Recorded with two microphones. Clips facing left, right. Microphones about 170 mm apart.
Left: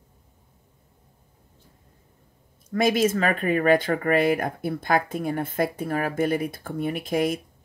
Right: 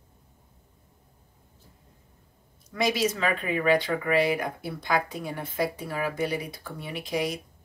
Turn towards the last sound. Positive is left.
turn(degrees=50)  # may be behind; listen again after turning